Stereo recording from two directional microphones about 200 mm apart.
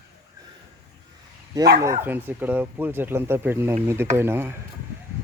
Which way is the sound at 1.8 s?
15° right (ahead or behind).